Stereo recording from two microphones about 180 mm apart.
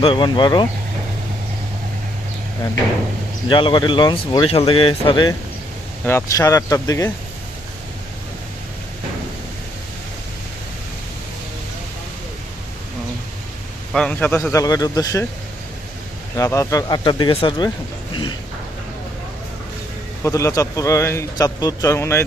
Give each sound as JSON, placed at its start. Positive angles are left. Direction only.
{"t": 0.0, "sound": "speech", "side_deg": 25}
{"t": 3.5, "sound": "speech", "side_deg": 25}
{"t": 6.1, "sound": "speech", "side_deg": 15}
{"t": 13.9, "sound": "speech", "side_deg": 5}
{"t": 16.4, "sound": "speech", "side_deg": 15}
{"t": 18.1, "sound": "a sound", "side_deg": 25}
{"t": 20.2, "sound": "speech", "side_deg": 15}